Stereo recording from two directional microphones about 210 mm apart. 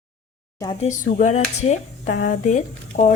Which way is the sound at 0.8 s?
40° left (ahead or behind).